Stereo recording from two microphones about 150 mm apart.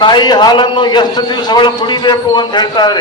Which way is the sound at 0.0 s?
30° left (ahead or behind).